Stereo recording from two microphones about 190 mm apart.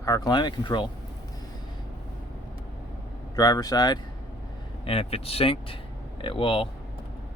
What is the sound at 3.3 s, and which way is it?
Speech, 20° left (ahead or behind).